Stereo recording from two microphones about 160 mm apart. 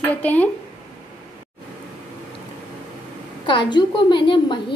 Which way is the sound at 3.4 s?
30° left (ahead or behind).